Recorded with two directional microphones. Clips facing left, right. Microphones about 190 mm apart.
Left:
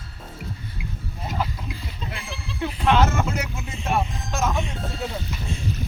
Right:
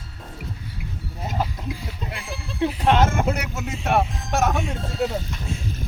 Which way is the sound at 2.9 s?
50° right (ahead or behind).